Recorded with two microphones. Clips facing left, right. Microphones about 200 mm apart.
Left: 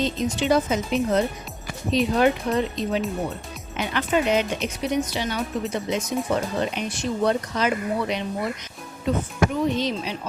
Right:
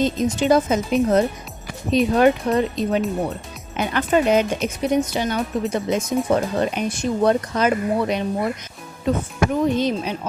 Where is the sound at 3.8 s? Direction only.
45° right (ahead or behind).